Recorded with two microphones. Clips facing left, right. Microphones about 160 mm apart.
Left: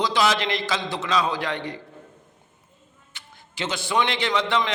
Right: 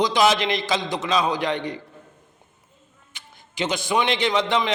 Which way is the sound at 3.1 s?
15° right (ahead or behind).